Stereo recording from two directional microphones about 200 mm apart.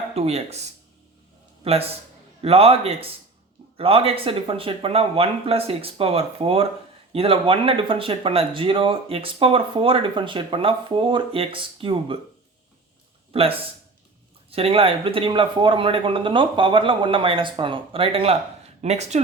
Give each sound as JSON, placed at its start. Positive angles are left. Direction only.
{"t": 0.1, "sound": "a man's voice", "side_deg": -30}
{"t": 13.3, "sound": "speech", "side_deg": -30}